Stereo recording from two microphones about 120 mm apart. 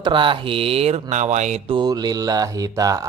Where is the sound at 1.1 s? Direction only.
80° right.